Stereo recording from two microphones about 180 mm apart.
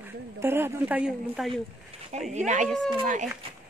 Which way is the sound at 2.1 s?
40° right (ahead or behind).